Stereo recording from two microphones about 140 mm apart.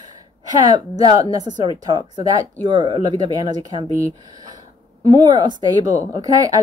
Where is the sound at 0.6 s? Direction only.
25° right (ahead or behind).